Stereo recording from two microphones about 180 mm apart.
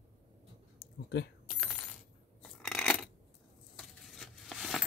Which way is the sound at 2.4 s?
5° left (ahead or behind).